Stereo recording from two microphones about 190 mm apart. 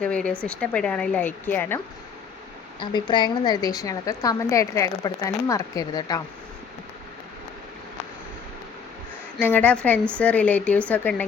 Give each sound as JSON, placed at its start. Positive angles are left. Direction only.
{"t": 0.0, "sound": "a woman's voice", "side_deg": 5}
{"t": 2.9, "sound": "a woman's voice", "side_deg": 25}
{"t": 9.4, "sound": "speech", "side_deg": 10}